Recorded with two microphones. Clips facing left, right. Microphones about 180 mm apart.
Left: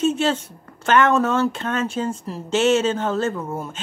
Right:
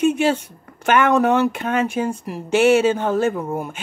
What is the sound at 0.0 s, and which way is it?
Speech, 15° right (ahead or behind).